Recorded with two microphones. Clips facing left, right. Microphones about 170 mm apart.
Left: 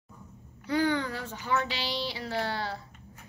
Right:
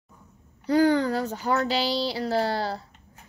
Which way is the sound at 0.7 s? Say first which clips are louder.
Right 7 dB; 35° right (ahead or behind).